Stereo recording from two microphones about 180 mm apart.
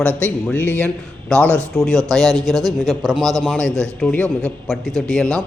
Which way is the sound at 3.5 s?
5° left (ahead or behind).